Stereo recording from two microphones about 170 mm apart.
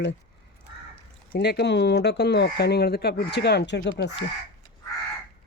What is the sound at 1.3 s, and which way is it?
Speech, 75° left (ahead or behind).